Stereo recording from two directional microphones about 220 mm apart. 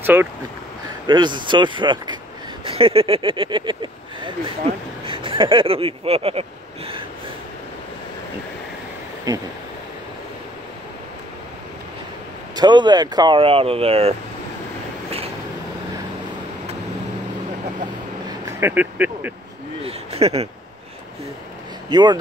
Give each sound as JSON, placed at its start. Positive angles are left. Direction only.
{"t": 0.0, "sound": "speech", "side_deg": -10}
{"t": 1.0, "sound": "speech", "side_deg": -20}
{"t": 5.0, "sound": "a sound", "side_deg": -25}
{"t": 9.3, "sound": "speech", "side_deg": -15}
{"t": 12.5, "sound": "speech", "side_deg": -20}
{"t": 18.4, "sound": "speech", "side_deg": -10}
{"t": 19.8, "sound": "a sound", "side_deg": -25}
{"t": 21.8, "sound": "speech", "side_deg": -20}